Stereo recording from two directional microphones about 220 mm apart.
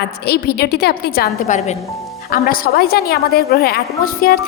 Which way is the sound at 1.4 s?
30° left (ahead or behind).